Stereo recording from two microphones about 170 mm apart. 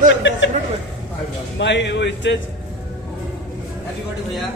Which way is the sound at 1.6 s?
90° left.